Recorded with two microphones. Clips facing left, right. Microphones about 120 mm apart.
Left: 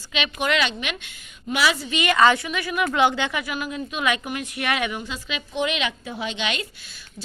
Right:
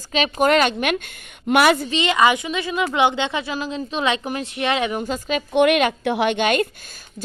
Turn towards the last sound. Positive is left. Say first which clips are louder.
# right 9 dB
turn(degrees=-50)  # may be behind; listen again after turning